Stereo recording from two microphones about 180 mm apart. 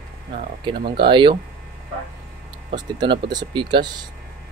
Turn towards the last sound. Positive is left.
turn(degrees=-25)  # may be behind; listen again after turning